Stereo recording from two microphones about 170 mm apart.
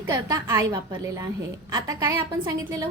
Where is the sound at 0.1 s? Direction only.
20° right (ahead or behind).